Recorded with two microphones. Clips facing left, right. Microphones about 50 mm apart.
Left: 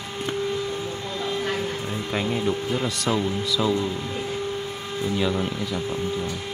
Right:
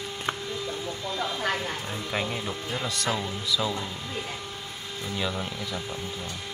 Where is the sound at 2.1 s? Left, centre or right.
Centre.